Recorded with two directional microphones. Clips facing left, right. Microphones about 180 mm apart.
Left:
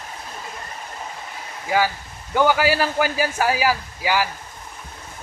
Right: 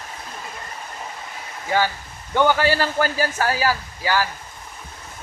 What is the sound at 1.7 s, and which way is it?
A man's voice, 5° left (ahead or behind).